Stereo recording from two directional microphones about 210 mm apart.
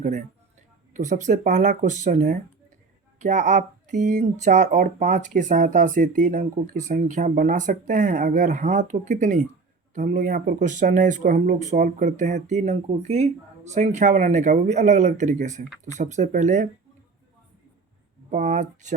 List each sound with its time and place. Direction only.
0.0 s speech: 35° right (ahead or behind)
18.3 s speech: 35° right (ahead or behind)